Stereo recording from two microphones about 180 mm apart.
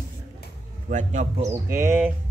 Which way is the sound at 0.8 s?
40° right (ahead or behind).